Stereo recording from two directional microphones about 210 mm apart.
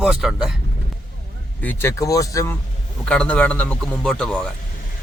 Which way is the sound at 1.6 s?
10° left (ahead or behind).